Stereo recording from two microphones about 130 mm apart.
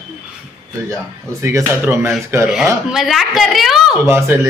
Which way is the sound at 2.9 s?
Centre (ahead or behind).